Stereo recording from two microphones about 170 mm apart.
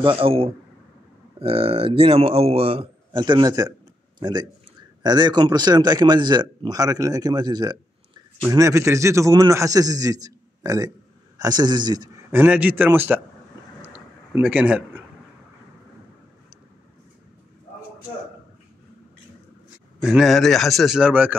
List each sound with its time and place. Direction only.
0.0 s a man's voice: 30° right (ahead or behind)
12.3 s a man's voice: 10° right (ahead or behind)
20.0 s a man's voice: centre (ahead or behind)